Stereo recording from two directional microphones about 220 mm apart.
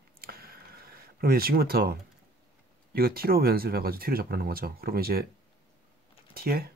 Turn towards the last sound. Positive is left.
turn(degrees=-45)  # may be behind; listen again after turning